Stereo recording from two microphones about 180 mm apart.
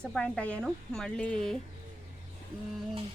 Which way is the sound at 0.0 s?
5° left (ahead or behind).